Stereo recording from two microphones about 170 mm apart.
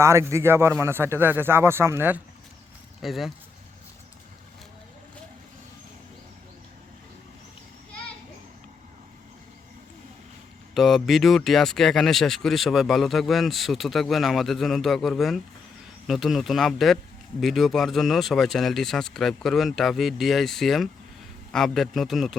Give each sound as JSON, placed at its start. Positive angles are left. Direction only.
{"t": 0.0, "sound": "speech", "side_deg": -15}
{"t": 3.0, "sound": "speech", "side_deg": 0}
{"t": 10.8, "sound": "speech", "side_deg": 0}